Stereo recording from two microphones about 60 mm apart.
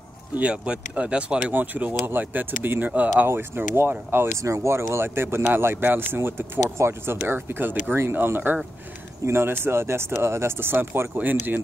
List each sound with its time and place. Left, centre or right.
0.4 s speech: centre
3.3 s speech: right
4.4 s speech: right